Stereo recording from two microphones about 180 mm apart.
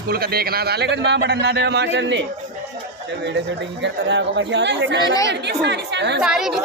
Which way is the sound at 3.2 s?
75° right (ahead or behind).